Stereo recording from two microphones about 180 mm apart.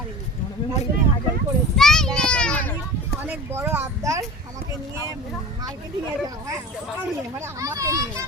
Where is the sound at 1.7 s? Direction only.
5° left (ahead or behind).